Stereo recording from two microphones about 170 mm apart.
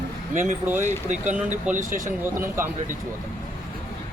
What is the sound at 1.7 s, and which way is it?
Speech, 50° right (ahead or behind).